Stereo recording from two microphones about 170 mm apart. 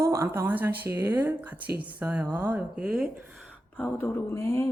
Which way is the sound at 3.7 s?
10° left (ahead or behind).